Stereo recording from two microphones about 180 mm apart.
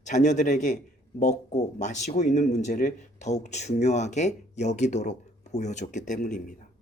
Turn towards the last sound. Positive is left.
turn(degrees=45)  # may be behind; listen again after turning